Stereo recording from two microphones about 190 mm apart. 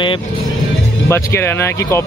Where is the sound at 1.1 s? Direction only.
15° left (ahead or behind).